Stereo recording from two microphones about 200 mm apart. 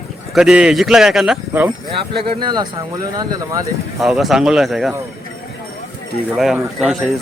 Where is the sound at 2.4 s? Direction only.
20° right (ahead or behind).